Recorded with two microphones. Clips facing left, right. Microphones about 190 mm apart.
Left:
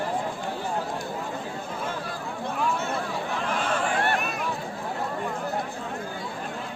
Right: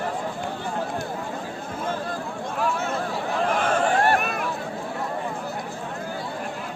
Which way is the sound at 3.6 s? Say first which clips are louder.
Right 4 dB; 45° right (ahead or behind).